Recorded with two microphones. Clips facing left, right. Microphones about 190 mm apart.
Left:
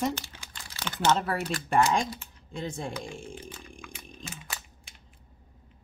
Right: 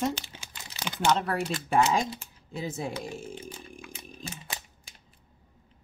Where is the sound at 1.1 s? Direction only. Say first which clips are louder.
Even; centre (ahead or behind).